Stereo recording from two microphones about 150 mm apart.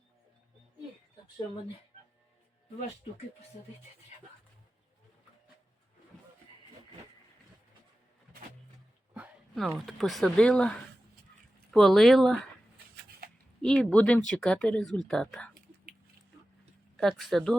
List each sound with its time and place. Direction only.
9.1 s speech: 10° right (ahead or behind)
12.7 s a sound: 90° right
13.6 s speech: 5° left (ahead or behind)
17.0 s speech: centre (ahead or behind)